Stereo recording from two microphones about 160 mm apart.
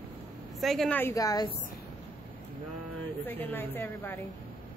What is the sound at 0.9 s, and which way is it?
Speech, 20° left (ahead or behind).